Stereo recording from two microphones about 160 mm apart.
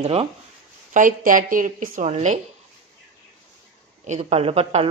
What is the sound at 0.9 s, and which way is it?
A woman's voice, 55° right (ahead or behind).